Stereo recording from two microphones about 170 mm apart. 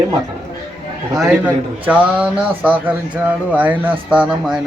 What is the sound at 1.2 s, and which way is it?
A man's voice, 10° right (ahead or behind).